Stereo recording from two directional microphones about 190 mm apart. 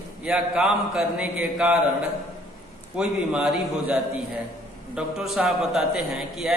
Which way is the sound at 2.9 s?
5° right (ahead or behind).